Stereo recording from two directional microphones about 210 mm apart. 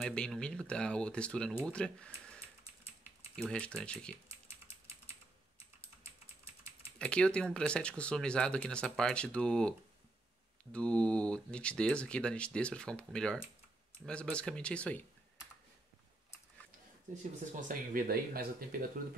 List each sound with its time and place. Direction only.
0.0 s speech: 5° left (ahead or behind)
7.0 s speech: 5° left (ahead or behind)
17.1 s speech: 35° right (ahead or behind)